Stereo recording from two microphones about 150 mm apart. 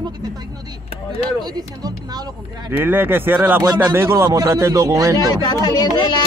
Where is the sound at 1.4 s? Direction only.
25° right (ahead or behind).